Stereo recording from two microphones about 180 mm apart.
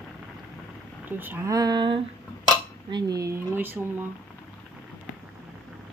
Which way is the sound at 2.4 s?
20° right (ahead or behind).